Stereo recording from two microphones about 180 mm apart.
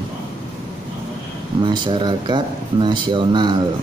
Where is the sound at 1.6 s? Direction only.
25° right (ahead or behind).